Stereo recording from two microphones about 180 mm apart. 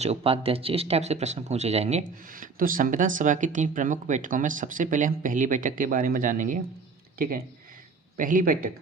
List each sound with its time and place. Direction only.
0.0 s speech: 35° right (ahead or behind); by 8.7 s 50° right (ahead or behind)